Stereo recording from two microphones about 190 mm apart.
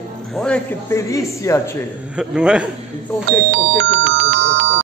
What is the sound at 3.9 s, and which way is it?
Music, 70° right (ahead or behind).